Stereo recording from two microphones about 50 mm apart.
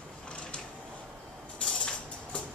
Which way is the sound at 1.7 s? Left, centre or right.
Centre.